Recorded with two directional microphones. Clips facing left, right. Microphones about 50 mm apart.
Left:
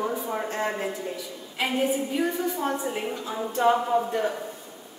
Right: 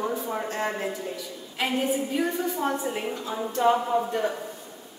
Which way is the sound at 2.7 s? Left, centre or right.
Left.